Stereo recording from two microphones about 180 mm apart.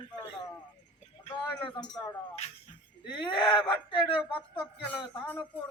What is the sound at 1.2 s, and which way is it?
Speech, 25° left (ahead or behind).